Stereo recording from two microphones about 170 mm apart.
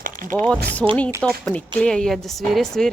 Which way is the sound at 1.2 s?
5° left (ahead or behind).